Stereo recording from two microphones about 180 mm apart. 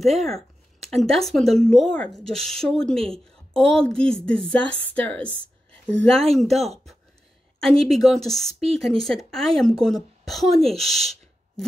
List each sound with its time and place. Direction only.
0.0 s a woman's voice: centre (ahead or behind)
6.5 s speech: 35° right (ahead or behind)
7.9 s a woman's voice: centre (ahead or behind)